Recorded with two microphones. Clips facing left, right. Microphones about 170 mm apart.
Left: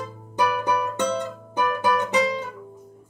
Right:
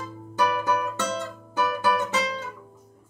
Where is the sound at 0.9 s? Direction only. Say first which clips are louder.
Left 5 dB; 15° left (ahead or behind).